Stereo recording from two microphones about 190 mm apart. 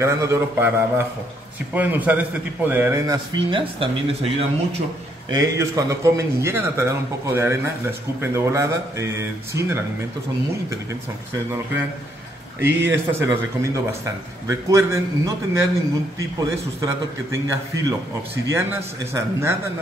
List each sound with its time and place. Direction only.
0.0 s speech: 10° right (ahead or behind)
3.3 s speech: 25° right (ahead or behind)
5.3 s speech: 15° right (ahead or behind)
12.5 s speech: 10° right (ahead or behind)
18.5 s speech: 15° right (ahead or behind)